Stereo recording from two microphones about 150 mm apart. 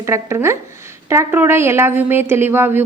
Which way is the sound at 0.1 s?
20° right (ahead or behind).